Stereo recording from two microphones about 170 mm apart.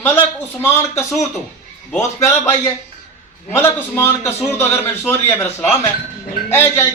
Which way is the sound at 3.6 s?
15° left (ahead or behind).